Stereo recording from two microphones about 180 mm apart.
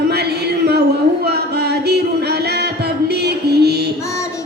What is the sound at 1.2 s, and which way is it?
Music, 65° right (ahead or behind).